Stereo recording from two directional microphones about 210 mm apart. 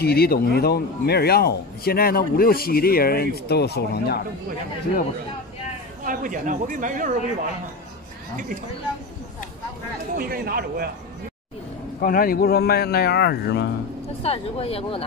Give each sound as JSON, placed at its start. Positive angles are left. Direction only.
{"t": 0.0, "sound": "a man's voice", "side_deg": 50}
{"t": 6.0, "sound": "speech", "side_deg": -40}
{"t": 10.1, "sound": "speech", "side_deg": -45}
{"t": 12.0, "sound": "a man's voice", "side_deg": 45}
{"t": 14.2, "sound": "speech", "side_deg": 30}